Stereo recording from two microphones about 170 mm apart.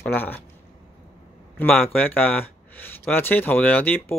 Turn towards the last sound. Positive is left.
turn(degrees=10)  # may be behind; listen again after turning